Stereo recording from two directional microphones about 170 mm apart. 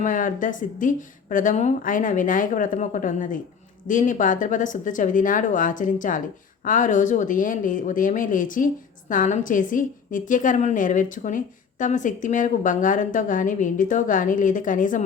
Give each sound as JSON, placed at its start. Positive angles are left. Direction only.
{"t": 0.0, "sound": "speech", "side_deg": 50}